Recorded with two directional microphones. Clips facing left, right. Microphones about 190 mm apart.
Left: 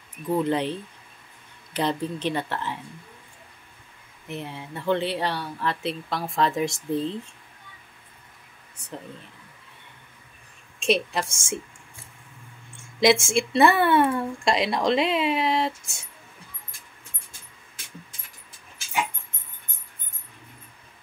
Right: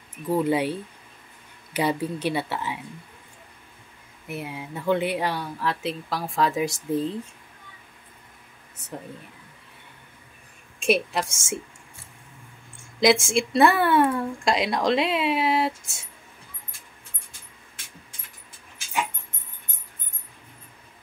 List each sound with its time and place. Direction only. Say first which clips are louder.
0.3 s speech: right 1 dB; 10° right (ahead or behind)
4.3 s speech: right 1 dB; 10° right (ahead or behind)
10.9 s speech: right 1 dB; centre (ahead or behind)
13.0 s speech: even; centre (ahead or behind)